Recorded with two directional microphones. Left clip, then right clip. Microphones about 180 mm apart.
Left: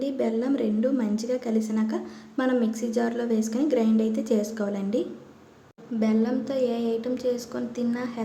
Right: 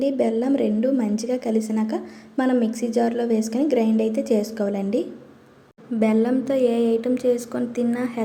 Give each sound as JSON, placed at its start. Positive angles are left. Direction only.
{"t": 0.0, "sound": "a woman's voice", "side_deg": -20}
{"t": 6.0, "sound": "speech", "side_deg": -25}